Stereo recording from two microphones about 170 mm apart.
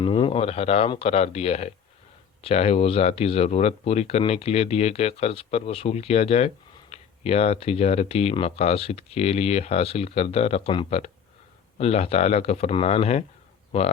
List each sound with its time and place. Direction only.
0.0 s speech: 30° left (ahead or behind)